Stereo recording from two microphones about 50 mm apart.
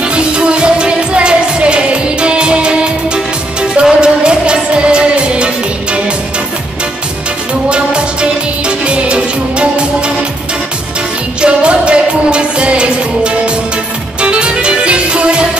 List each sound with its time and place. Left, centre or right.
0.0 s music: centre
7.7 s music: right
11.4 s music: right